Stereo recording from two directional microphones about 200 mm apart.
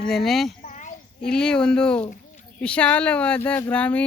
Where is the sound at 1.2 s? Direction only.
5° left (ahead or behind).